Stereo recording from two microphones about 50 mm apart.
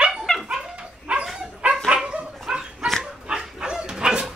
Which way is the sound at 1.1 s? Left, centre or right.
Right.